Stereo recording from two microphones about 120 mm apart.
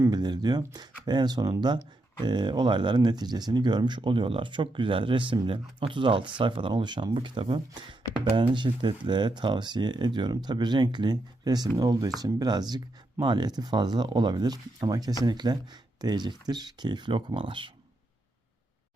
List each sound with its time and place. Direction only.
0.0 s speech: 35° right (ahead or behind)